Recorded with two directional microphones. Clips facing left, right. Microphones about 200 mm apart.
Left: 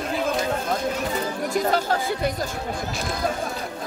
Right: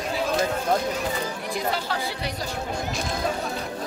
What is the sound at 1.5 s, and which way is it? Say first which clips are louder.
Speech: left 6 dB; 45° left (ahead or behind).